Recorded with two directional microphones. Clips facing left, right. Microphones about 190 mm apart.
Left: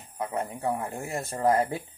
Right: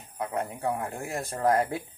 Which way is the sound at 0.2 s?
Centre (ahead or behind).